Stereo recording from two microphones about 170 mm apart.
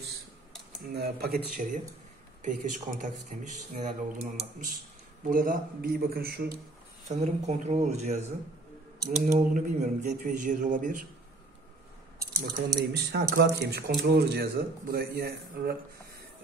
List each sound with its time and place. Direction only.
0.9 s speech: 65° right (ahead or behind)
2.4 s speech: 50° right (ahead or behind)
7.1 s speech: 40° right (ahead or behind)
9.4 s speech: 50° right (ahead or behind)
12.2 s speech: 80° right